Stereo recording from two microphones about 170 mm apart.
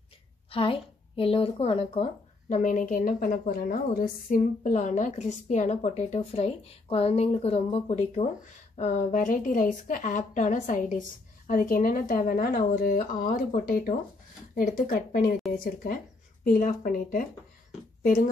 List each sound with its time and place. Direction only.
0.5 s a woman's voice: 30° left (ahead or behind)
2.5 s a woman's voice: 50° left (ahead or behind)